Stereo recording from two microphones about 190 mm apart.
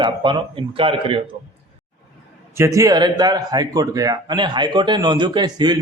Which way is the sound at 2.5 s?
15° right (ahead or behind).